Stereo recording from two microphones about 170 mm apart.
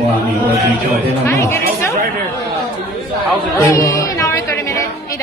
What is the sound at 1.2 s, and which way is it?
Speech, 15° left (ahead or behind).